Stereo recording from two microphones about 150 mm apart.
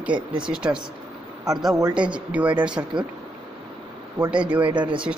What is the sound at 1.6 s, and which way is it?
Speech, 25° right (ahead or behind).